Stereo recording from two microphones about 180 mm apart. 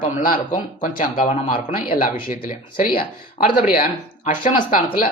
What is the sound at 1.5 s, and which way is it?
Speech, 50° left (ahead or behind).